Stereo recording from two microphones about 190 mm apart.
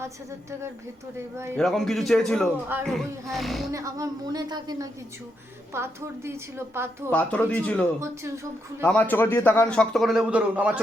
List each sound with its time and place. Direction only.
0.0 s a woman's voice: 15° right (ahead or behind)
1.5 s a man's voice: centre (ahead or behind)
3.7 s a woman's voice: 15° right (ahead or behind)
7.1 s a man's voice: 10° left (ahead or behind); by 10.8 s 5° right (ahead or behind)